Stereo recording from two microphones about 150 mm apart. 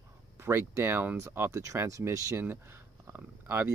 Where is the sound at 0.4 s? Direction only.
15° right (ahead or behind).